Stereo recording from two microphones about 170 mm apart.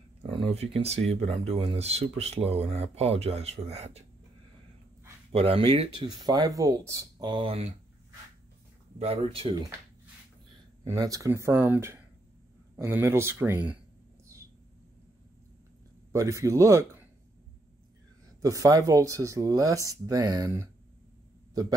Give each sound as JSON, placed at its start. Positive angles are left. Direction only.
{"t": 0.5, "sound": "speech", "side_deg": -40}
{"t": 5.3, "sound": "speech", "side_deg": -35}
{"t": 8.9, "sound": "speech", "side_deg": -35}
{"t": 10.8, "sound": "speech", "side_deg": -20}
{"t": 16.1, "sound": "speech", "side_deg": -20}
{"t": 18.4, "sound": "speech", "side_deg": -20}